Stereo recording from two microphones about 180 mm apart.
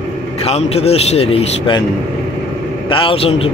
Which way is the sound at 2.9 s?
30° left (ahead or behind).